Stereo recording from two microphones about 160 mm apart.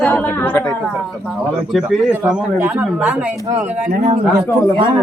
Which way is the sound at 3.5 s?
50° right (ahead or behind).